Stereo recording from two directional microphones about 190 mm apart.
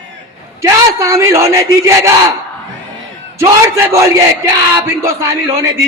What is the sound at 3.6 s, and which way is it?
A man's voice, 15° right (ahead or behind).